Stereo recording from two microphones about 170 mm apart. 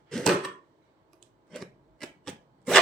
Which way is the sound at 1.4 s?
Centre (ahead or behind).